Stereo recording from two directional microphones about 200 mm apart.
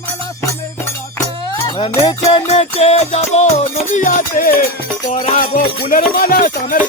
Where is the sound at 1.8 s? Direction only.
25° left (ahead or behind); by 6.0 s 45° left (ahead or behind).